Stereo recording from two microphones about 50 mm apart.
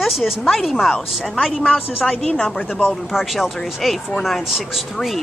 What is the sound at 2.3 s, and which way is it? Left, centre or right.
Speech, centre.